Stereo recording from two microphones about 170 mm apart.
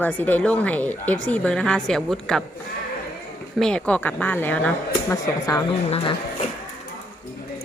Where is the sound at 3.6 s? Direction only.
5° left (ahead or behind).